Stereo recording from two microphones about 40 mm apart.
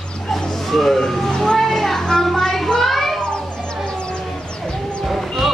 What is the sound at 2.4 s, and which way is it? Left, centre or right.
Children playing, centre.